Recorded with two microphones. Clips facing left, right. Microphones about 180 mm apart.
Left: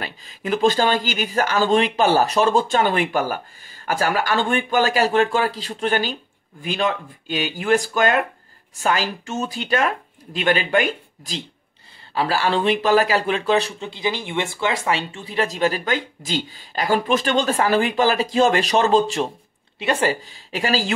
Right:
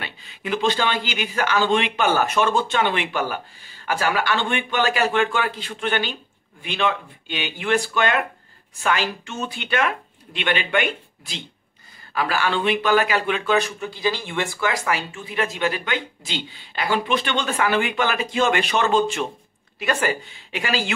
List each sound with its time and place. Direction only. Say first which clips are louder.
0.0 s speech: left 3 dB; 40° left (ahead or behind)